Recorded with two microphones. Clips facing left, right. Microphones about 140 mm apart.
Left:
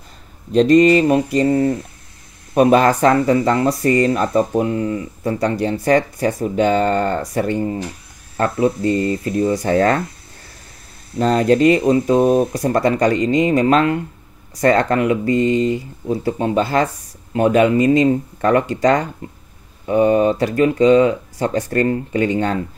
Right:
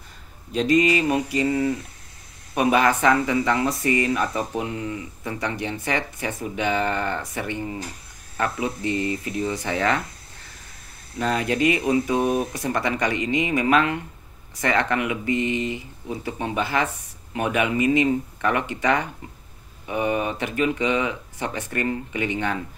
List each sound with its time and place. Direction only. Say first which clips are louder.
0.6 s speech: left 8 dB; 40° left (ahead or behind)
11.1 s speech: left 9 dB; 35° left (ahead or behind)